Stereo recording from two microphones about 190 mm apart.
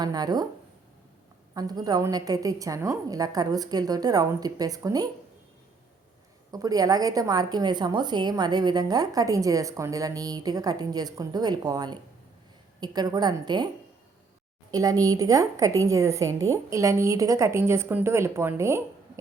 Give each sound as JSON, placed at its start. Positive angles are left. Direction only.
{"t": 0.0, "sound": "a woman's voice", "side_deg": -20}
{"t": 1.5, "sound": "a woman's voice", "side_deg": -20}
{"t": 6.5, "sound": "a woman's voice", "side_deg": -20}
{"t": 14.7, "sound": "a woman's voice", "side_deg": -20}